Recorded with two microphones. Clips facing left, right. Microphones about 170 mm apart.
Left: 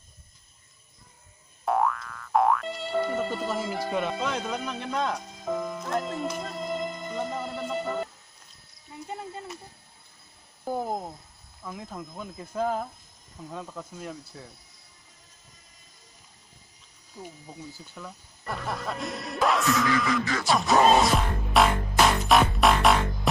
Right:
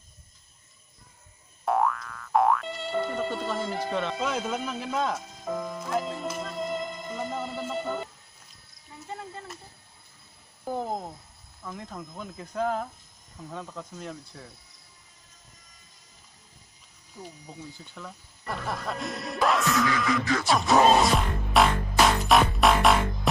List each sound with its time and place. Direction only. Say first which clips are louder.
1.6 s music: even; centre (ahead or behind)
4.2 s speech: right 1 dB; 5° right (ahead or behind)
9.0 s speech: left 2 dB; 20° left (ahead or behind)
10.6 s speech: left 1 dB; 10° left (ahead or behind)
17.2 s speech: left 1 dB; 5° left (ahead or behind)